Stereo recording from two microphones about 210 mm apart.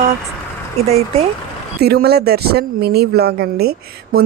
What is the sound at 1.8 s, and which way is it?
Speech, 50° right (ahead or behind).